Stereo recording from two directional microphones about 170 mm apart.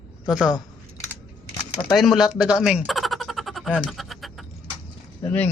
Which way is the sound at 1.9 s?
Centre (ahead or behind).